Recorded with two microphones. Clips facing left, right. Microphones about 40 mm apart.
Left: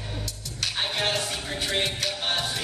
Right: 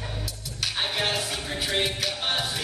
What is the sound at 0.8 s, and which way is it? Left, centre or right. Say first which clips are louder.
Music: even; centre.